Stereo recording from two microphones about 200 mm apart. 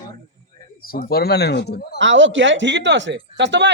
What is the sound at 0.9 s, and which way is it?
Speech, 50° left (ahead or behind).